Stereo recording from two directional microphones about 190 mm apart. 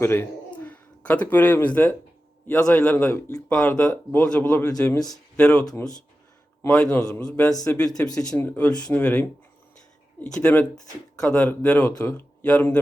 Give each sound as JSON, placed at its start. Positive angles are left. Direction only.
{"t": 0.0, "sound": "a man's voice", "side_deg": 10}
{"t": 5.4, "sound": "a man's voice", "side_deg": 5}
{"t": 5.6, "sound": "speech", "side_deg": 20}
{"t": 6.6, "sound": "a man's voice", "side_deg": 5}
{"t": 7.5, "sound": "speech", "side_deg": 15}
{"t": 10.4, "sound": "speech", "side_deg": 10}